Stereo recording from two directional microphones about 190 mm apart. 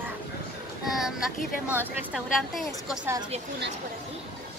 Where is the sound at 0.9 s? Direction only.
Centre (ahead or behind).